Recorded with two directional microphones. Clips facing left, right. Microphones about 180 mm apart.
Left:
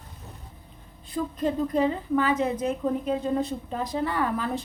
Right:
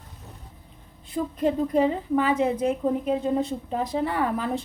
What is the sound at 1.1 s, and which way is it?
A woman's voice, 25° right (ahead or behind).